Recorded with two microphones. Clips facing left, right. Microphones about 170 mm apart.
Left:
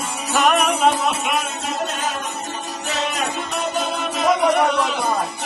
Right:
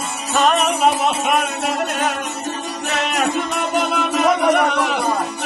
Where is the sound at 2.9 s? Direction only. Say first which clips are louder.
Right 4 dB; 70° right (ahead or behind).